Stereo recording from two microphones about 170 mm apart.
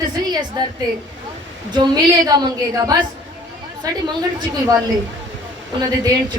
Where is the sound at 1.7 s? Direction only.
25° right (ahead or behind).